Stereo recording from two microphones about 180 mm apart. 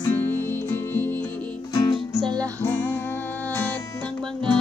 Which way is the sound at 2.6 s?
10° left (ahead or behind).